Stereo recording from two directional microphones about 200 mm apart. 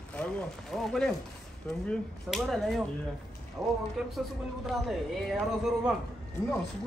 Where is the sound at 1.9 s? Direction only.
Centre (ahead or behind).